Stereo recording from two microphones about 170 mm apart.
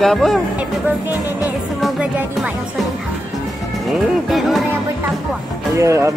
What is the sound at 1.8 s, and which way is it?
Music, 5° right (ahead or behind).